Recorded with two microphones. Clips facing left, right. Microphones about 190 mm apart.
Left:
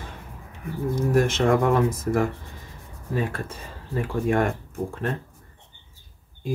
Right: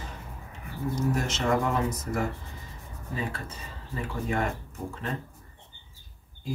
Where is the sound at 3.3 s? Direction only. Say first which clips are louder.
Left 6 dB; 55° left (ahead or behind).